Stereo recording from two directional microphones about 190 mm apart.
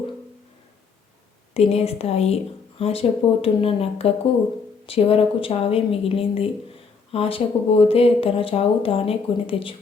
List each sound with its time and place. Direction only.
1.5 s speech: 35° left (ahead or behind)